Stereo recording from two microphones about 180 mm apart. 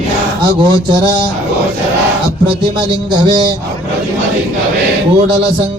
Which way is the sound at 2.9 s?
25° right (ahead or behind).